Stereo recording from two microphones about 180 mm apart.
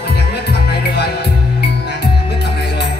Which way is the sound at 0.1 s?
65° left (ahead or behind).